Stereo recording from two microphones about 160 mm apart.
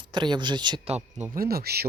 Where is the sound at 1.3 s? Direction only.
70° right (ahead or behind).